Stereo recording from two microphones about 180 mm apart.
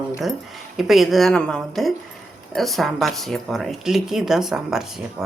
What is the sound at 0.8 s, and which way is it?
Speech, centre (ahead or behind).